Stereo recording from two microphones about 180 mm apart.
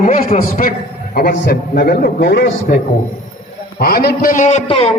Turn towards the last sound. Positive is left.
turn(degrees=30)  # may be behind; listen again after turning